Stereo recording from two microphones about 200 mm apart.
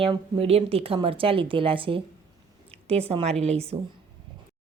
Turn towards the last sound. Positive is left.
turn(degrees=-30)  # may be behind; listen again after turning